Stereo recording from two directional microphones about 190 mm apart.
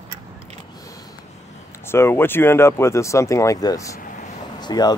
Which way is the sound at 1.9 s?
15° left (ahead or behind).